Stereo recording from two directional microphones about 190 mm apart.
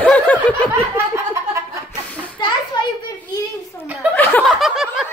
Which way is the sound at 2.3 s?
25° left (ahead or behind).